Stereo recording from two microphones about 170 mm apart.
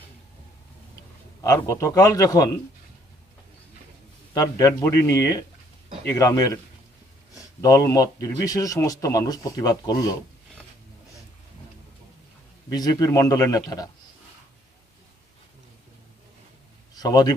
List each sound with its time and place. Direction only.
1.4 s a man's voice: 20° left (ahead or behind)
4.3 s a man's voice: 20° left (ahead or behind)
7.6 s a man's voice: 20° left (ahead or behind)
12.7 s a man's voice: 20° left (ahead or behind)
16.9 s speech: 20° left (ahead or behind)